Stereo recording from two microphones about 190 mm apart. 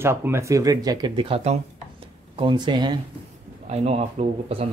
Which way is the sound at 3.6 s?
35° right (ahead or behind).